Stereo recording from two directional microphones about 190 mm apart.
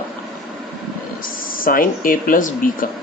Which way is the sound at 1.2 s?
45° left (ahead or behind).